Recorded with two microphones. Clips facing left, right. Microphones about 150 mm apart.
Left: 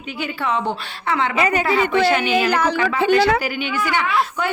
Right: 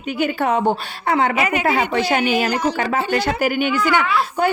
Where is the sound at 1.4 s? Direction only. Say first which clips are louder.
Left 1 dB; 30° left (ahead or behind).